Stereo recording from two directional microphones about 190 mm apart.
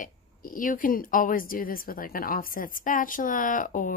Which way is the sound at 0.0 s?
45° left (ahead or behind).